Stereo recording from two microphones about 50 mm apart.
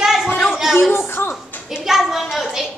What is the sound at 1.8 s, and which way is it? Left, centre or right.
Speech, centre.